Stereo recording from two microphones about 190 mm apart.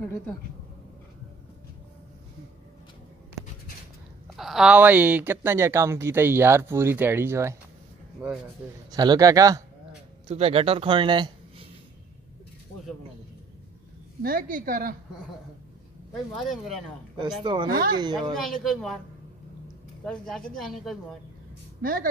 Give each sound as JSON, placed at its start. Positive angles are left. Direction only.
{"t": 0.0, "sound": "speech", "side_deg": 10}
{"t": 4.4, "sound": "speech", "side_deg": 0}
{"t": 8.9, "sound": "a man's voice", "side_deg": -20}
{"t": 10.2, "sound": "speech", "side_deg": -30}
{"t": 14.2, "sound": "a woman's voice", "side_deg": -50}
{"t": 16.1, "sound": "speech", "side_deg": 0}
{"t": 17.4, "sound": "a man's voice", "side_deg": -25}
{"t": 17.6, "sound": "a woman's voice", "side_deg": -50}
{"t": 17.9, "sound": "a man's voice", "side_deg": -20}
{"t": 18.3, "sound": "speech", "side_deg": 0}
{"t": 20.1, "sound": "speech", "side_deg": 5}
{"t": 21.8, "sound": "a woman's voice", "side_deg": -50}